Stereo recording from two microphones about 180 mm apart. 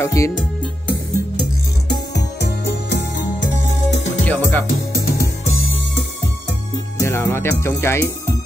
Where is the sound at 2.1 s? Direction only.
70° left (ahead or behind).